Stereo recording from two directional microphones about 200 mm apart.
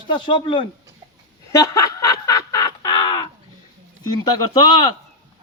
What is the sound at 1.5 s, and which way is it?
Snicker, 15° left (ahead or behind).